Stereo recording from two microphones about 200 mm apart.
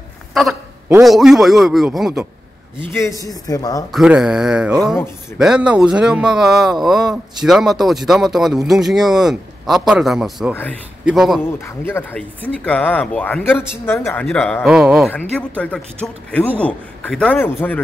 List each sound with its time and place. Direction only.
0.3 s a sound: centre (ahead or behind)
0.9 s speech: centre (ahead or behind)
2.8 s speech: 15° left (ahead or behind)
3.9 s speech: centre (ahead or behind)
11.5 s speech: 10° left (ahead or behind); by 15.0 s 5° right (ahead or behind)
15.3 s speech: 5° left (ahead or behind)